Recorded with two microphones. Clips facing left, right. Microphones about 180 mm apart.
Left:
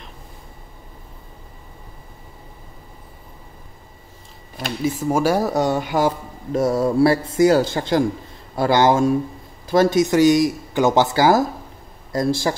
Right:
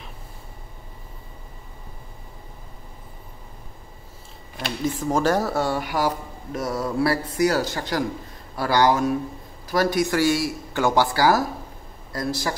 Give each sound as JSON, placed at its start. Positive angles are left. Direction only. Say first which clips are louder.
{"t": 4.8, "sound": "speech", "louder": "left 3 dB", "side_deg": 10}